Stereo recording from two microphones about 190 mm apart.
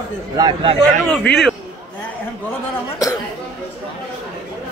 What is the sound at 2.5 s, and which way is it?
Speech, 20° left (ahead or behind).